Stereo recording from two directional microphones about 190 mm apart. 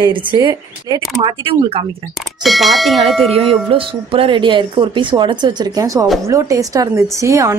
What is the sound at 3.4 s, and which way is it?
A woman's voice, 30° right (ahead or behind).